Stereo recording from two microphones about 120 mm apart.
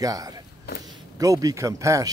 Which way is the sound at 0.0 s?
30° right (ahead or behind).